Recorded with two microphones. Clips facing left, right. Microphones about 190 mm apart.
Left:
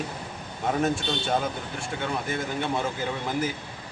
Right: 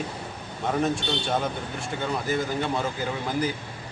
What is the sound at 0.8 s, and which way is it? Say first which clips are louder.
Speech: right 1 dB; centre (ahead or behind).